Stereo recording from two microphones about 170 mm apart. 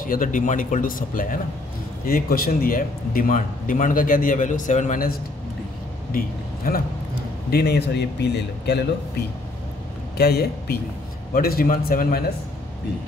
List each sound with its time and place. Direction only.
0.0 s a man's voice: 55° left (ahead or behind)
6.1 s speech: 60° left (ahead or behind)
7.5 s speech: 75° left (ahead or behind)
10.1 s speech: 70° left (ahead or behind)
11.3 s a man's voice: 60° left (ahead or behind)